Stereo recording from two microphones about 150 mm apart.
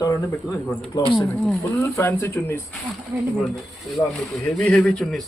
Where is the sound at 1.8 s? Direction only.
15° left (ahead or behind).